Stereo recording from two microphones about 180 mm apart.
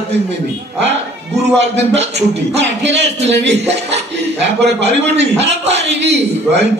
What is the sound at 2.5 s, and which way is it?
A man's voice, 75° right (ahead or behind).